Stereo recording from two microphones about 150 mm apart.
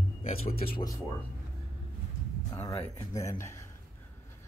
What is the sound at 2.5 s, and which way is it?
Speech, 20° left (ahead or behind).